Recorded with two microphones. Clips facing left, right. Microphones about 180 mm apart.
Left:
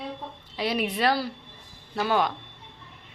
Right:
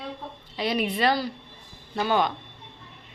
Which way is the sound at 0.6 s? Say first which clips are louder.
Right 1 dB; 5° left (ahead or behind).